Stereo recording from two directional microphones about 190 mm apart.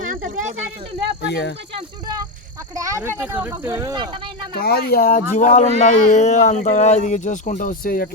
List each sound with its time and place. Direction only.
0.1 s a sound: 45° right (ahead or behind)
1.2 s speech: 65° left (ahead or behind)
2.7 s a child's voice: 15° right (ahead or behind)
4.5 s speech: 55° left (ahead or behind)